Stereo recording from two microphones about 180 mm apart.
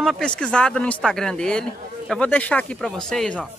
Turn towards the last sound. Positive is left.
turn(degrees=5)  # may be behind; listen again after turning